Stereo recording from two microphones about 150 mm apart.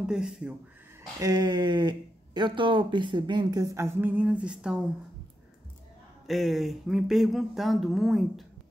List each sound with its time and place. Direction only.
0.0 s speech: 5° right (ahead or behind)
1.2 s speech: 25° right (ahead or behind); by 4.8 s 5° right (ahead or behind)
6.2 s speech: centre (ahead or behind)